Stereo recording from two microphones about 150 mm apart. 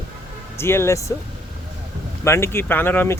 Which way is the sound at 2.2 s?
20° left (ahead or behind).